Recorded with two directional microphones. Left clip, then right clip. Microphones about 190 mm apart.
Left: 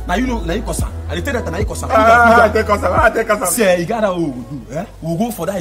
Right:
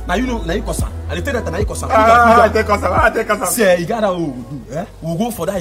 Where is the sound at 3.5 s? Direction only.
10° right (ahead or behind).